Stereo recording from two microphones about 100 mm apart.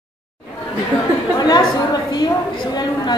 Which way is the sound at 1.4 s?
45° left (ahead or behind).